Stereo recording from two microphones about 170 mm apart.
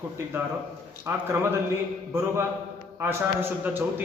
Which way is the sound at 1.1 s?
15° right (ahead or behind).